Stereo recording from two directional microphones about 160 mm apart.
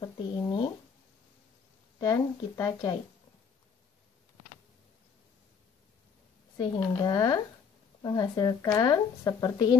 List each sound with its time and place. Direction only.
0.0 s a sound: 25° left (ahead or behind)
2.0 s speech: 20° left (ahead or behind)
6.5 s speech: 25° left (ahead or behind)